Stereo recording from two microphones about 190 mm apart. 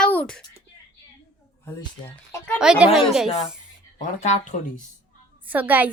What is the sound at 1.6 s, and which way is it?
Speech, 15° left (ahead or behind).